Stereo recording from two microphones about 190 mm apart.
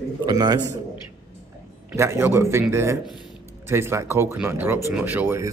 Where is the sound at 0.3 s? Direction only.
20° right (ahead or behind).